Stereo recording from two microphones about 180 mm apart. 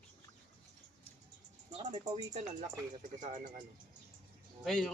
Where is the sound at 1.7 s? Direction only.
40° right (ahead or behind).